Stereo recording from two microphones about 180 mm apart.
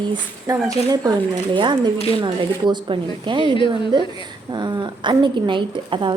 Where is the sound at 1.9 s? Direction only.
35° left (ahead or behind).